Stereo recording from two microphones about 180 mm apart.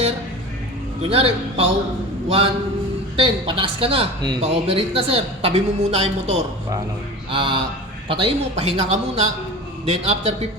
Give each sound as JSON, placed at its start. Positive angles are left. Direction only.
{"t": 1.0, "sound": "speech", "side_deg": -30}
{"t": 3.2, "sound": "speech", "side_deg": -30}